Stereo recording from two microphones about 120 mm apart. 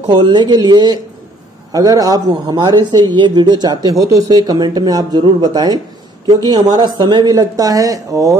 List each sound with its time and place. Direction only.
0.1 s speech: 40° right (ahead or behind)